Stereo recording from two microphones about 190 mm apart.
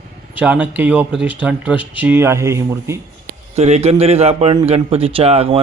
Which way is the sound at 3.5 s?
35° right (ahead or behind).